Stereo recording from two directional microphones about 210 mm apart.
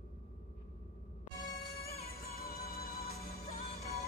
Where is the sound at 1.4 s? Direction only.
45° left (ahead or behind).